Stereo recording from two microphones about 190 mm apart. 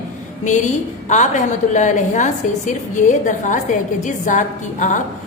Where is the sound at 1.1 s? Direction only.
40° left (ahead or behind).